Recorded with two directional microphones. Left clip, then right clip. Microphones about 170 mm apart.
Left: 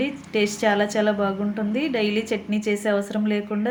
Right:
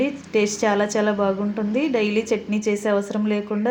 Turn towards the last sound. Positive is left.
turn(degrees=-5)  # may be behind; listen again after turning